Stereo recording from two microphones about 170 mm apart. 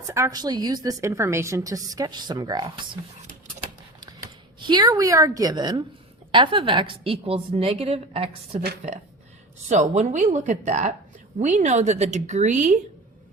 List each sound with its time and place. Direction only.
0.1 s a woman's voice: 20° right (ahead or behind)
4.0 s a woman's voice: 25° right (ahead or behind); by 12.8 s 45° right (ahead or behind)